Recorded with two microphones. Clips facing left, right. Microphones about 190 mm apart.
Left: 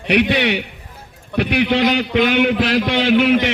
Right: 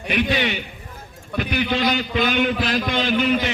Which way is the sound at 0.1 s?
75° left (ahead or behind).